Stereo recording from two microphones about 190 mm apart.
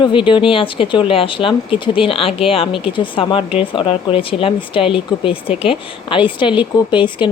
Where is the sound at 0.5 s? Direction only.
25° left (ahead or behind).